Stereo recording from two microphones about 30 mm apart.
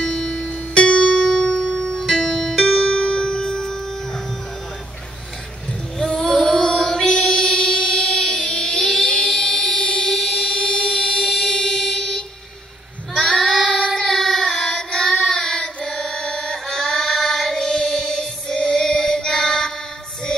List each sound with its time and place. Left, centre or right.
0.0 s music: centre
0.5 s music: left
1.6 s music: left
2.2 s music: centre
2.8 s music: left; by 4.2 s centre
5.9 s child singing: centre
8.5 s music: left
10.0 s buzzer: centre
10.9 s a sound: centre
13.1 s child singing: centre
15.8 s music: centre